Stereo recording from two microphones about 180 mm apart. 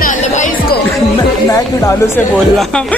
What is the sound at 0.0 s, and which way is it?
Music, 45° left (ahead or behind).